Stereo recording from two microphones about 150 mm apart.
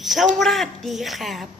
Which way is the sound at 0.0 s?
Centre (ahead or behind).